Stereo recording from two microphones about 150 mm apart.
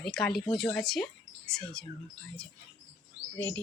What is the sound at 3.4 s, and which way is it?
Speech, 15° left (ahead or behind).